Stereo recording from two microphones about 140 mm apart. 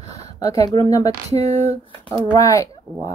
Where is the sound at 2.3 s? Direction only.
25° left (ahead or behind).